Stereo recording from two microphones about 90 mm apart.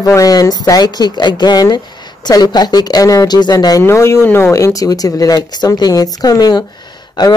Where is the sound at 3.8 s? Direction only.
30° left (ahead or behind).